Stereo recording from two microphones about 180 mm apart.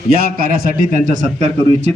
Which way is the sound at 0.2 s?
55° right (ahead or behind).